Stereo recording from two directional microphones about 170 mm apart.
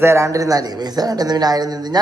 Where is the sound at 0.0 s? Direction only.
15° right (ahead or behind).